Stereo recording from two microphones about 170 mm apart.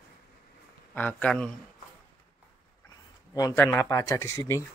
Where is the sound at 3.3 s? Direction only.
20° left (ahead or behind).